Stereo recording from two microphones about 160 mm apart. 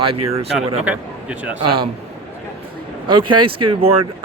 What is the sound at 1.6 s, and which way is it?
Speech, 30° right (ahead or behind).